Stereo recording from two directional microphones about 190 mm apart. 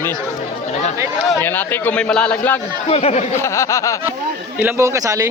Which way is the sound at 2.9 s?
35° left (ahead or behind).